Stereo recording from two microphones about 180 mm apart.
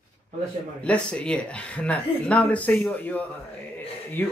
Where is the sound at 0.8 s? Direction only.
5° left (ahead or behind).